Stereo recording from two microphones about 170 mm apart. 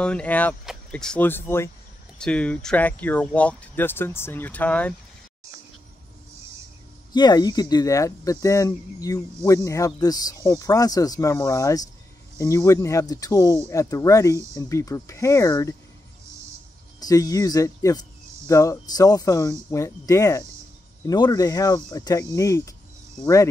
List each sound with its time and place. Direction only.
0.0 s speech: 5° left (ahead or behind)
7.1 s speech: 25° left (ahead or behind)
17.0 s speech: 20° left (ahead or behind)